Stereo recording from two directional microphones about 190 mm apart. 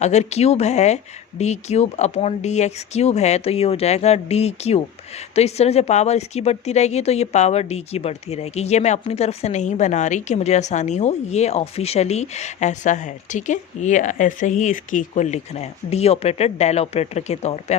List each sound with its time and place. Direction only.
0.0 s speech: 35° left (ahead or behind)